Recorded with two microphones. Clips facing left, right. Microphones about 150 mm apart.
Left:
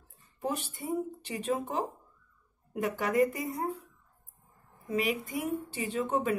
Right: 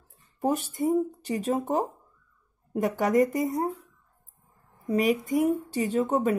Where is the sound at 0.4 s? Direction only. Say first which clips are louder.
Right 8 dB; 40° right (ahead or behind).